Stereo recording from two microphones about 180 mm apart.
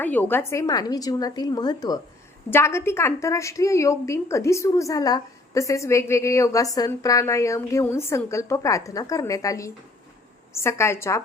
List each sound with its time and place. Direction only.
0.0 s a woman's voice: 10° left (ahead or behind)